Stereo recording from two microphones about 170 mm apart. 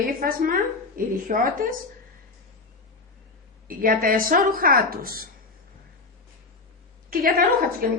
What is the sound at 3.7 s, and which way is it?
Speech, 55° right (ahead or behind).